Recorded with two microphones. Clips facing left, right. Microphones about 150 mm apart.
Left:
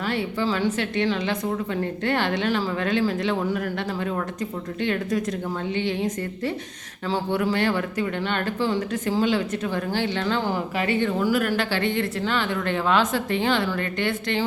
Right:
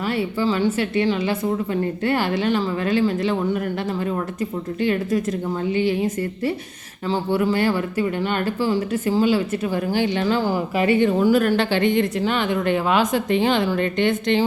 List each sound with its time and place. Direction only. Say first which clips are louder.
0.2 s a woman's voice: right 5 dB; 5° right (ahead or behind)
4.8 s a woman's voice: right 3 dB; 5° right (ahead or behind)
11.3 s speech: right 5 dB; 30° right (ahead or behind)
11.8 s a woman's voice: right 5 dB; 15° right (ahead or behind)